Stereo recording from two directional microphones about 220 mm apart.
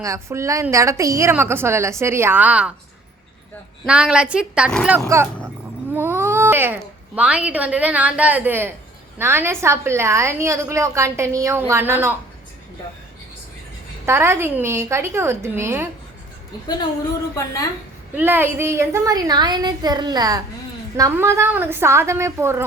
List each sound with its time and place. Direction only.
0.0 s a woman's voice: 15° right (ahead or behind)
3.8 s a woman's voice: 5° right (ahead or behind)
4.9 s a woman's voice: 10° right (ahead or behind)
5.9 s cat: 10° right (ahead or behind)
7.2 s a woman's voice: 5° right (ahead or behind)
14.0 s a woman's voice: 10° right (ahead or behind)
17.3 s a woman's voice: 15° left (ahead or behind)
18.2 s a woman's voice: 10° right (ahead or behind)